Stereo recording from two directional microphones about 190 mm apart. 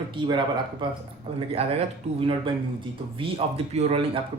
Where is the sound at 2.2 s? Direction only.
25° right (ahead or behind).